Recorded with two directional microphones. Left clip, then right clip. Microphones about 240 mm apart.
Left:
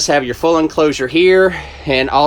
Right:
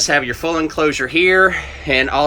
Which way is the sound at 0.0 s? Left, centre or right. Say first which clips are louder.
Left 3 dB; centre.